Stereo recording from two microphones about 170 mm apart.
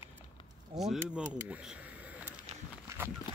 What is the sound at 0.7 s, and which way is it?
Speech, centre (ahead or behind).